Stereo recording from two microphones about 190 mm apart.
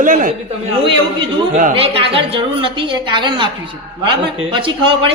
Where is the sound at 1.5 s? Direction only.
45° right (ahead or behind).